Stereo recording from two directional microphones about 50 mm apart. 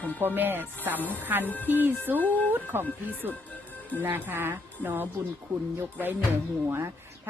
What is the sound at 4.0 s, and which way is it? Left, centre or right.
A woman's voice, right.